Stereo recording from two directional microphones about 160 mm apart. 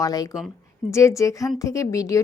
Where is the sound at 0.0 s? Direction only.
20° left (ahead or behind).